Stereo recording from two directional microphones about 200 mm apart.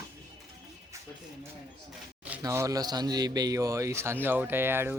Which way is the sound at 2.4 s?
15° right (ahead or behind).